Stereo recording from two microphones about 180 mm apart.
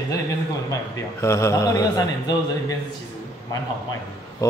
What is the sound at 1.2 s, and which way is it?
A man's voice, 15° left (ahead or behind).